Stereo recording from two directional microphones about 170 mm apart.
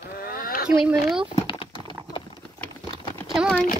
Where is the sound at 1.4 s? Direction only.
30° left (ahead or behind).